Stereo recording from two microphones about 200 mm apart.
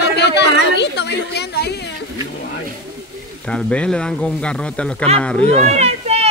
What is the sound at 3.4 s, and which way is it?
Speech, 5° left (ahead or behind).